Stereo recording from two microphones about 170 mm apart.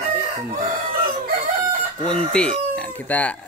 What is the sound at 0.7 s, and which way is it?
Chicken, 55° right (ahead or behind).